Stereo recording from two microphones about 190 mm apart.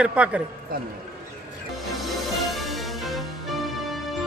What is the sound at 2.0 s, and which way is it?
Music, centre (ahead or behind).